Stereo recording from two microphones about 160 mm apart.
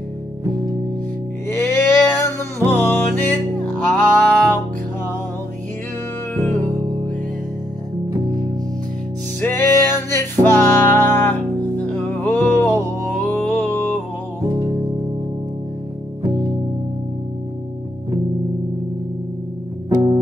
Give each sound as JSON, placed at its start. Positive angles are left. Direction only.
{"t": 1.5, "sound": "music", "side_deg": 15}
{"t": 9.4, "sound": "music", "side_deg": 15}